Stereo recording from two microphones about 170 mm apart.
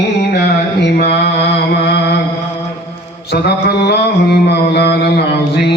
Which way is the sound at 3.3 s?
75° left (ahead or behind).